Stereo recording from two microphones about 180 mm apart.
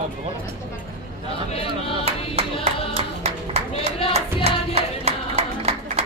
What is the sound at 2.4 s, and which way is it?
Music, 35° right (ahead or behind).